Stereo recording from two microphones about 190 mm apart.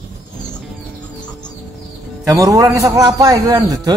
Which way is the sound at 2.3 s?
20° right (ahead or behind).